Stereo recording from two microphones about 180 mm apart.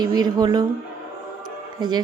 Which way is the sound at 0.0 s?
20° right (ahead or behind).